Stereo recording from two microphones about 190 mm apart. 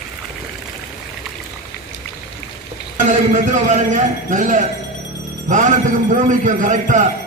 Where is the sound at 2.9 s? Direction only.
40° right (ahead or behind).